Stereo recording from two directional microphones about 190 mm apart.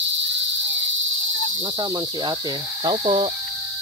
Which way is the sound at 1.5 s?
25° right (ahead or behind).